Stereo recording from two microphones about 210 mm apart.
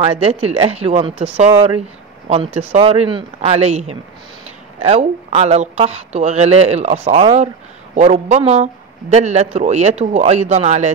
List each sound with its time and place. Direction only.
0.0 s speech: 30° right (ahead or behind)